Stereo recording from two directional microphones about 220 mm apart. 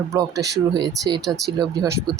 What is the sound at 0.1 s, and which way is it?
Speech, 15° right (ahead or behind).